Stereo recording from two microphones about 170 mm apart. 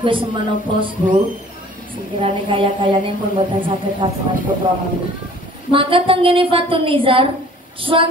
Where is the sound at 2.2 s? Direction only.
30° right (ahead or behind).